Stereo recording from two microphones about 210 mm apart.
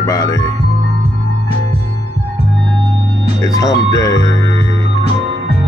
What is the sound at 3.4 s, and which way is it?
Speech, 15° left (ahead or behind).